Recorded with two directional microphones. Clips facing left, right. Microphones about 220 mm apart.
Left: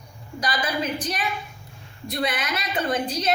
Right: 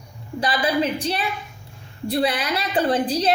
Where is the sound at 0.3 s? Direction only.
30° right (ahead or behind).